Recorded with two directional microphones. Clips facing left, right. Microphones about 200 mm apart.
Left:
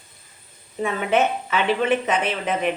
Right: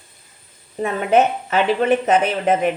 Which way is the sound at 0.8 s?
40° right (ahead or behind).